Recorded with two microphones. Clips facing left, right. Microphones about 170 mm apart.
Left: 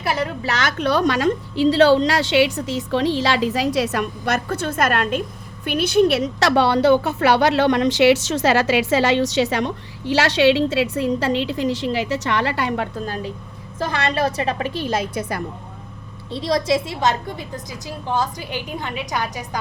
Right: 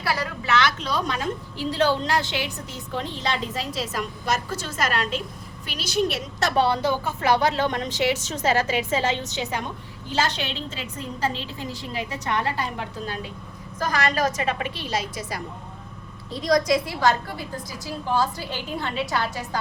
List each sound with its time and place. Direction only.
0.0 s a woman's voice: 20° left (ahead or behind)
0.4 s a woman's voice: 40° left (ahead or behind)
0.8 s a woman's voice: 65° left (ahead or behind)
13.7 s a woman's voice: 30° left (ahead or behind); by 15.4 s 55° left (ahead or behind)
16.3 s a woman's voice: 30° left (ahead or behind)